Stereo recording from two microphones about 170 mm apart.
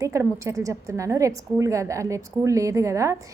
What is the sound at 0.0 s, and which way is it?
A woman's voice, 20° right (ahead or behind).